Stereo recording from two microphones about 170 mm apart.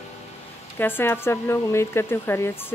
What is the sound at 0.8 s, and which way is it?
Speech, 10° left (ahead or behind).